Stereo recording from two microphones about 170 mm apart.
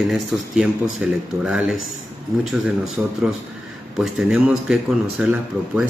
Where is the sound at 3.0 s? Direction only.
5° right (ahead or behind).